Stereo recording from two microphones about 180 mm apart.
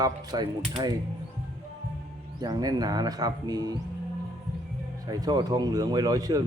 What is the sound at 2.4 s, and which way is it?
Speech, 20° right (ahead or behind).